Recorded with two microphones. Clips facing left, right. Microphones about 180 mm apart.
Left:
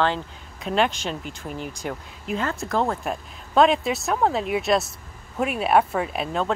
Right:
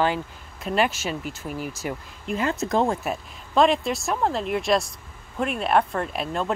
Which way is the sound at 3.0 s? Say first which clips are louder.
Even; centre (ahead or behind).